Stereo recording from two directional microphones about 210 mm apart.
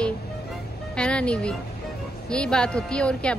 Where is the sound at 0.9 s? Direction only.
5° left (ahead or behind).